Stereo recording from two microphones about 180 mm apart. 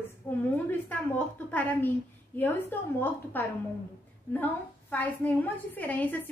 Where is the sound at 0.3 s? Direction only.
15° left (ahead or behind).